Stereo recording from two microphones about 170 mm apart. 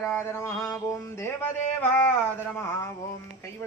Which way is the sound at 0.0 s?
10° left (ahead or behind).